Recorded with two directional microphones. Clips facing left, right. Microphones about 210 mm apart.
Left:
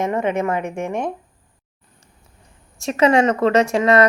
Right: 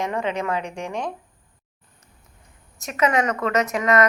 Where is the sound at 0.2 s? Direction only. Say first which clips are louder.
Left 5 dB; 50° left (ahead or behind).